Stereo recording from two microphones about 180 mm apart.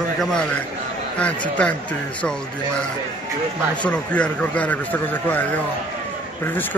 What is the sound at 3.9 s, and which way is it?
Speech, 5° left (ahead or behind).